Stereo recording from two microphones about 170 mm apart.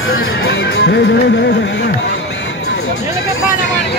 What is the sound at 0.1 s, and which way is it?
Speech, 80° left.